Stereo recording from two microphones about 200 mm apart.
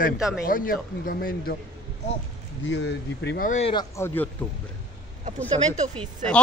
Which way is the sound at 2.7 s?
60° left (ahead or behind).